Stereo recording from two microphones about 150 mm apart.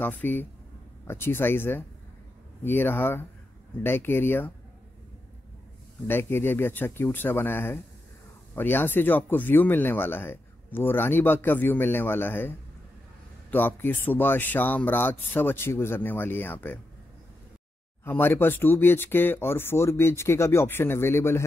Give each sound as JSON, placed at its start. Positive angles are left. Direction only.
{"t": 0.0, "sound": "speech", "side_deg": 10}
{"t": 6.0, "sound": "speech", "side_deg": 15}
{"t": 18.0, "sound": "speech", "side_deg": 15}